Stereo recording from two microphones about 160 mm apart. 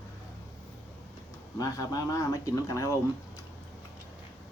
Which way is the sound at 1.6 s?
20° left (ahead or behind).